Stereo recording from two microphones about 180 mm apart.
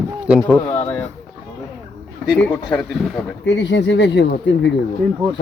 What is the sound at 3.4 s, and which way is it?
Speech, 80° left.